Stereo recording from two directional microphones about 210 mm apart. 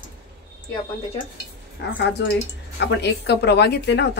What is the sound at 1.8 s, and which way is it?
A woman's voice, 50° left (ahead or behind).